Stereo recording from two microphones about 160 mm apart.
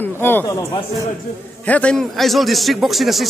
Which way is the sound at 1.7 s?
5° left (ahead or behind).